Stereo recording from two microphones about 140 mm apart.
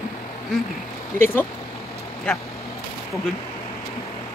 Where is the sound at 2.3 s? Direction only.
5° left (ahead or behind).